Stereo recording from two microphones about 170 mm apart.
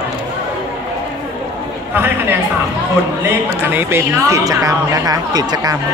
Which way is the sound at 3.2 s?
10° right (ahead or behind).